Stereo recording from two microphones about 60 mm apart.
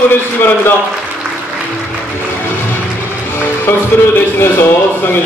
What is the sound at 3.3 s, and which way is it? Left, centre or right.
Speech, left.